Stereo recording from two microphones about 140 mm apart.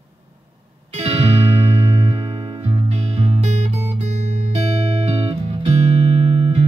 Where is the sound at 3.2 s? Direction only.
55° right (ahead or behind).